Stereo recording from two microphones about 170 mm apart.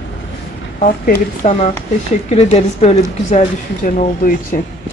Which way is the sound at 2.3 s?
40° left (ahead or behind).